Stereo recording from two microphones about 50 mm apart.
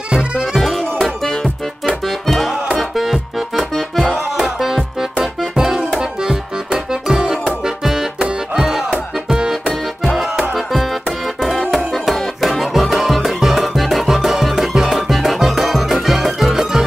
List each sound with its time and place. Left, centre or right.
0.1 s music: centre
0.6 s music: centre
5.6 s accordion: centre
7.6 s music: centre